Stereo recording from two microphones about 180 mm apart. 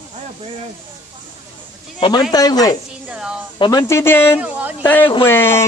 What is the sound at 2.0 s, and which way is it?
Speech, 25° left (ahead or behind).